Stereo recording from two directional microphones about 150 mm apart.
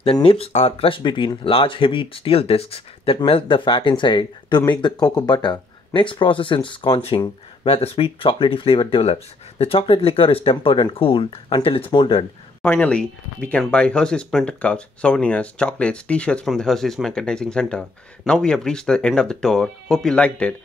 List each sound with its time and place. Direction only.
0.0 s speech: 35° left (ahead or behind)
12.6 s speech: 10° left (ahead or behind)